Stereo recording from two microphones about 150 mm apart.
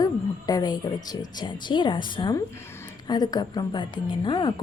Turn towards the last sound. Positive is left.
turn(degrees=30)  # may be behind; listen again after turning